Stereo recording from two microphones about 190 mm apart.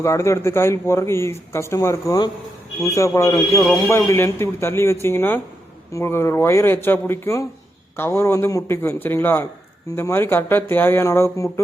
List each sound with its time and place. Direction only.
0.0 s a man's voice: 15° left (ahead or behind)